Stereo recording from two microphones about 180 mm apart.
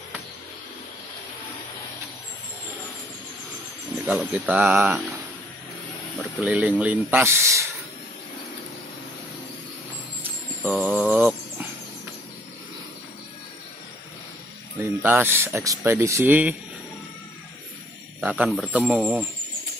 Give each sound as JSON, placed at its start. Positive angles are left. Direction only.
{"t": 4.0, "sound": "speech", "side_deg": -10}
{"t": 6.4, "sound": "speech", "side_deg": -10}
{"t": 10.6, "sound": "mantra", "side_deg": -5}
{"t": 14.8, "sound": "speech", "side_deg": -10}
{"t": 18.2, "sound": "speech", "side_deg": -5}